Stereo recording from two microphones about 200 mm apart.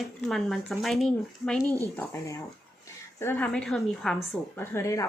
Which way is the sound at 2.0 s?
15° left (ahead or behind).